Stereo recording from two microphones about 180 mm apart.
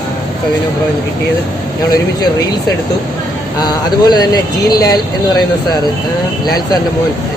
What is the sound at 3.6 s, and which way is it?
Speech, 20° left (ahead or behind).